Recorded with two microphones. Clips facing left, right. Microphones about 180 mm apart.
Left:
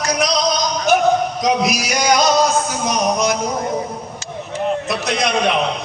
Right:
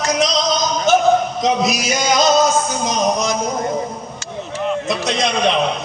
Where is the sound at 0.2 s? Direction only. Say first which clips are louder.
Even; 25° right (ahead or behind).